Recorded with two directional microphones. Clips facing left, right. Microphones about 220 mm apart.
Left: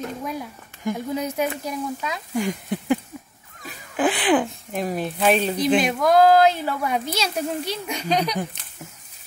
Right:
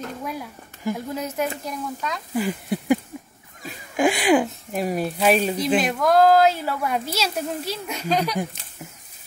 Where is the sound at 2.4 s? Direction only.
10° right (ahead or behind).